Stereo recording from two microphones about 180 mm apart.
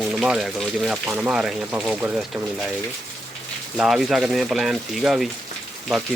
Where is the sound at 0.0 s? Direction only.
5° right (ahead or behind).